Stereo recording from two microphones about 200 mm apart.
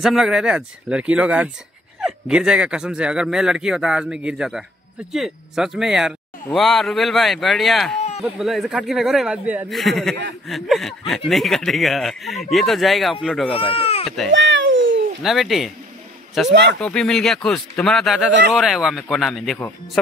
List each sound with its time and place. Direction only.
0.0 s speech: centre (ahead or behind)
13.5 s speech: 30° left (ahead or behind)
14.0 s speech: centre (ahead or behind)
14.3 s a sound: 65° right (ahead or behind)
15.2 s speech: centre (ahead or behind)